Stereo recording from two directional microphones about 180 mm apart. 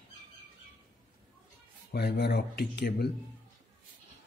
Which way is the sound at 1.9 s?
65° left (ahead or behind).